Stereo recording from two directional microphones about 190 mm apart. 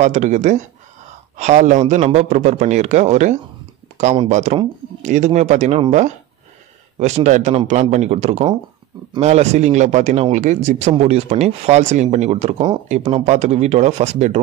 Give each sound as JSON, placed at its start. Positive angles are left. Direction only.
{"t": 0.0, "sound": "speech", "side_deg": -40}